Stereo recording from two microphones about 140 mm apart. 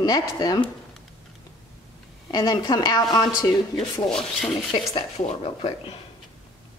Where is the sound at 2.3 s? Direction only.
30° left (ahead or behind).